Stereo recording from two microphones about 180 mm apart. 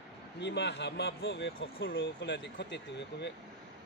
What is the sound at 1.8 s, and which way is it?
Speech, 90° left.